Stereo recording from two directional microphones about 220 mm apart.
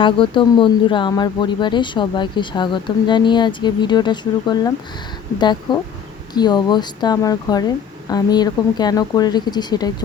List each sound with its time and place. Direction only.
0.0 s speech: 20° left (ahead or behind)
6.3 s speech: 20° left (ahead or behind)